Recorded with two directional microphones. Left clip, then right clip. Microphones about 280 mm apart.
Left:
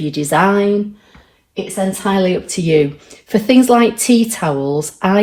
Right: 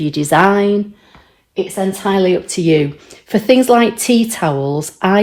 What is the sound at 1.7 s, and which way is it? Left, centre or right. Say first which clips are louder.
Speech: even; right.